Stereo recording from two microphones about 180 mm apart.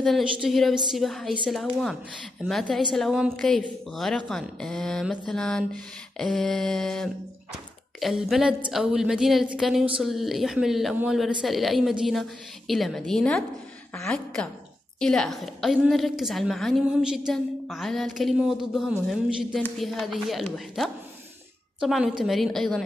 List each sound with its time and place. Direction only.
0.0 s speech: centre (ahead or behind)